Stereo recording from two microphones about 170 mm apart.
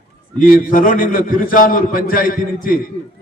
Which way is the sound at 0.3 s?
55° left (ahead or behind).